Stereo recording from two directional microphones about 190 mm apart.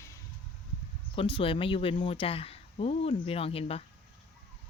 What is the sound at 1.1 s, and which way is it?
Speech, 25° left (ahead or behind).